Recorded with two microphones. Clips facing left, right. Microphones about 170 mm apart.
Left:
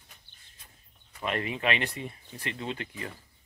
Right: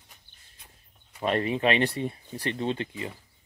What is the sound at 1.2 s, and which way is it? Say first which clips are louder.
Speech: right 6 dB; 35° right (ahead or behind).